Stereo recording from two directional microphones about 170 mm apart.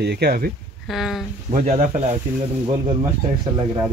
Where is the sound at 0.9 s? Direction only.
Centre (ahead or behind).